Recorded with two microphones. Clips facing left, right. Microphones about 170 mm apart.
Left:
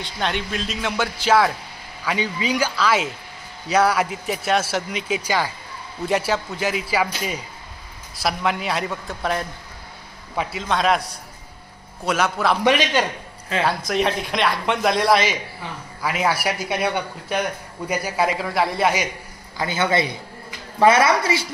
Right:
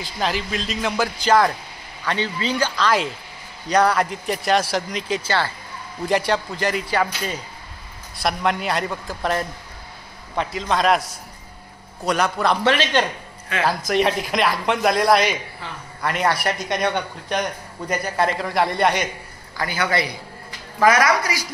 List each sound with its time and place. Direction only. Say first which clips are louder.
0.0 s speech: right 1 dB; centre (ahead or behind)
6.0 s speech: right 1 dB; centre (ahead or behind)
12.6 s speech: left 2 dB; 15° left (ahead or behind)
13.7 s speech: right 3 dB; centre (ahead or behind)
19.5 s a man's voice: left 2 dB; 20° left (ahead or behind)